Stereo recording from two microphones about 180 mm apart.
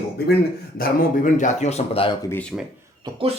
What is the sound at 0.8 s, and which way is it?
Speech, 50° left (ahead or behind).